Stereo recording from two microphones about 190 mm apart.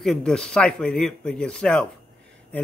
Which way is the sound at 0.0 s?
5° left (ahead or behind).